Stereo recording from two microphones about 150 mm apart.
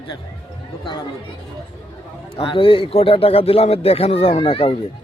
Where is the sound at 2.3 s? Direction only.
35° left (ahead or behind).